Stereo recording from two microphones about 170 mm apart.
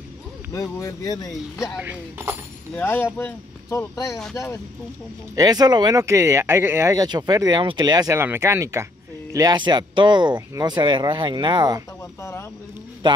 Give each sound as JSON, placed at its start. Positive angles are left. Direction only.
{"t": 0.5, "sound": "speech", "side_deg": 20}
{"t": 1.8, "sound": "speech", "side_deg": -10}
{"t": 2.7, "sound": "speech", "side_deg": 15}
{"t": 5.3, "sound": "speech", "side_deg": -20}
{"t": 12.2, "sound": "a sound", "side_deg": 15}
{"t": 13.0, "sound": "a sound", "side_deg": -25}